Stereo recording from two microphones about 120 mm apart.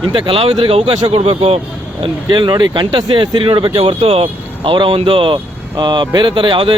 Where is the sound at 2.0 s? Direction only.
40° right (ahead or behind).